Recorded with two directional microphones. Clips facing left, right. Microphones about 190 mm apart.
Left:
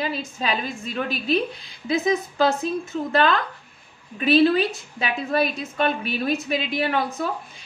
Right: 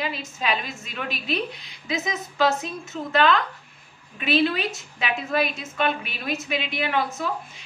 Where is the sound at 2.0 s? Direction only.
30° left (ahead or behind).